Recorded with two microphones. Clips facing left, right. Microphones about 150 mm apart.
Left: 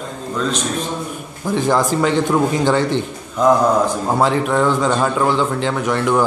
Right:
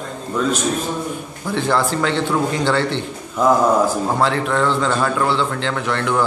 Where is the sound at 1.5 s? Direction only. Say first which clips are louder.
Left 2 dB; 15° left (ahead or behind).